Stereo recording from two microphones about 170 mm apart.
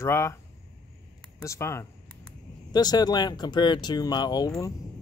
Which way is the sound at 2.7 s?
25° left (ahead or behind).